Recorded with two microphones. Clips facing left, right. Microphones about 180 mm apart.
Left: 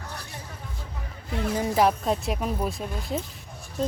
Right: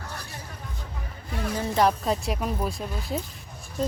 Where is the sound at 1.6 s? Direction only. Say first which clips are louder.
Even; 5° left (ahead or behind).